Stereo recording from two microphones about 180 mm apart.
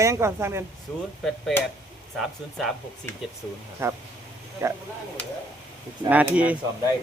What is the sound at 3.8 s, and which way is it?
Speech, 15° right (ahead or behind).